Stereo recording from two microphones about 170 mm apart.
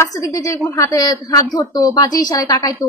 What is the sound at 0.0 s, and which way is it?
A woman's voice, 20° left (ahead or behind).